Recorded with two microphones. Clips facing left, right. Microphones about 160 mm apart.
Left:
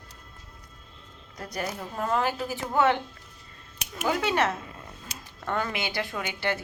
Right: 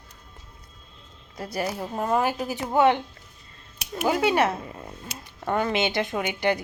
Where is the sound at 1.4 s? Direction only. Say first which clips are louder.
Right 4 dB; 10° right (ahead or behind).